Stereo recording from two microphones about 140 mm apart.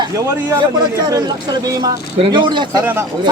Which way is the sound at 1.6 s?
25° right (ahead or behind).